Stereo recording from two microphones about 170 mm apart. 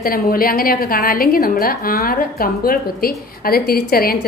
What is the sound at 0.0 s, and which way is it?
A woman's voice, 55° left (ahead or behind).